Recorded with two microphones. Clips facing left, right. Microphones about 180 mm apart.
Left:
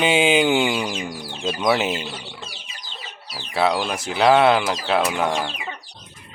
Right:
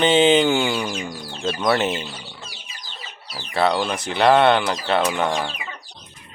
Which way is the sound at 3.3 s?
5° left (ahead or behind).